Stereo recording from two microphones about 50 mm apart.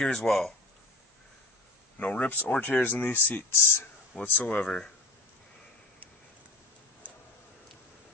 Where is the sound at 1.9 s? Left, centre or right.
Left.